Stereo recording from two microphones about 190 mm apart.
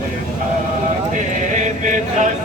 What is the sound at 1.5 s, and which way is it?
Chant, 40° right (ahead or behind).